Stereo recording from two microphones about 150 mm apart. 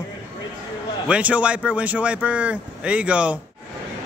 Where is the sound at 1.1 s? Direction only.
10° right (ahead or behind).